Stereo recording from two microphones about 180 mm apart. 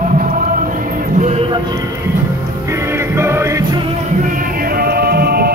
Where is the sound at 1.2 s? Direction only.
35° right (ahead or behind).